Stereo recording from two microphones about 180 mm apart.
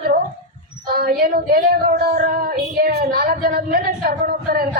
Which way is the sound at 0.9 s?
55° right (ahead or behind).